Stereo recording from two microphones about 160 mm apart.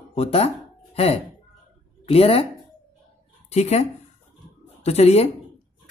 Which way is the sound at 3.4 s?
45° left (ahead or behind).